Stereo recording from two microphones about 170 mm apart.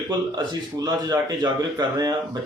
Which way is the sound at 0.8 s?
25° right (ahead or behind).